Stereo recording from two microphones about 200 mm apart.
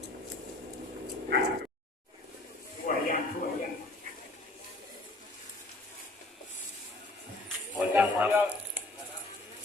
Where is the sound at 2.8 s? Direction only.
40° left (ahead or behind).